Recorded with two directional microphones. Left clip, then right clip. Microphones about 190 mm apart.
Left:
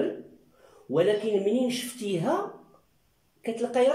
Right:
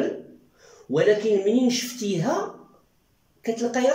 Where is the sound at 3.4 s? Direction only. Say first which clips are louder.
Right 4 dB; 10° left (ahead or behind).